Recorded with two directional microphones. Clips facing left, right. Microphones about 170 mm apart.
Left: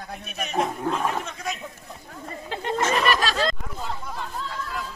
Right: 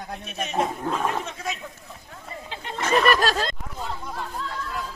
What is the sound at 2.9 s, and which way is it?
Snicker, 45° right (ahead or behind).